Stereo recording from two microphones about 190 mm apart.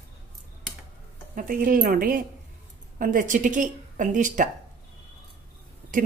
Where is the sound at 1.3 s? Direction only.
45° right (ahead or behind).